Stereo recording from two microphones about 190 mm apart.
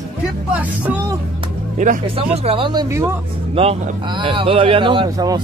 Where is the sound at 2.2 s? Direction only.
25° right (ahead or behind).